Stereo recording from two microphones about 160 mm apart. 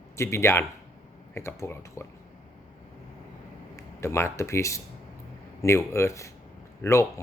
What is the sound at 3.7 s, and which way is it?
Speech, 15° left (ahead or behind).